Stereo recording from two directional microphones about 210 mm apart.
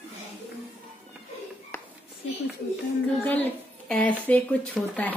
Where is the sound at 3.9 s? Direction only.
5° left (ahead or behind).